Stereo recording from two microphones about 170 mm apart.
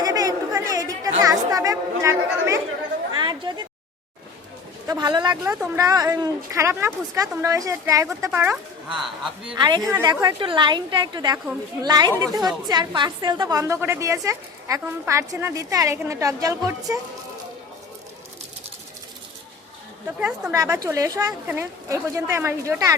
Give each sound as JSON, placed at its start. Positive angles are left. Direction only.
{"t": 0.0, "sound": "chatter", "side_deg": -20}
{"t": 3.2, "sound": "a sound", "side_deg": -25}
{"t": 4.9, "sound": "speech", "side_deg": -25}
{"t": 5.5, "sound": "a woman's voice", "side_deg": -5}
{"t": 5.8, "sound": "a woman's voice", "side_deg": -20}
{"t": 9.6, "sound": "a woman's voice", "side_deg": -25}
{"t": 20.1, "sound": "a woman's voice", "side_deg": -10}
{"t": 20.5, "sound": "a woman's voice", "side_deg": -20}